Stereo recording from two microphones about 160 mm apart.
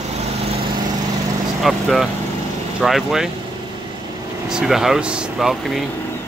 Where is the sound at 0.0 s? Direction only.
45° right (ahead or behind).